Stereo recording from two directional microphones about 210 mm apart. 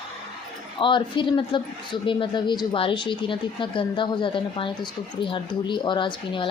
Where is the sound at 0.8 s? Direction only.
25° left (ahead or behind).